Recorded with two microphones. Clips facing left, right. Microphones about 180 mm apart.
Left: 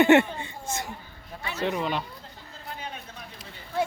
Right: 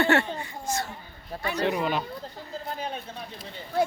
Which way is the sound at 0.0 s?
20° left (ahead or behind).